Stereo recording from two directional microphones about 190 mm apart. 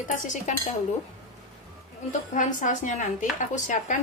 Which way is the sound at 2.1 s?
40° left (ahead or behind).